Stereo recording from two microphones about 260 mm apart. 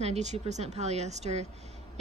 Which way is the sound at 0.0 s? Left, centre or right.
Right.